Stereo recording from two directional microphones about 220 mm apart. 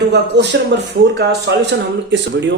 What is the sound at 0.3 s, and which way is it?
Speech, 50° right (ahead or behind).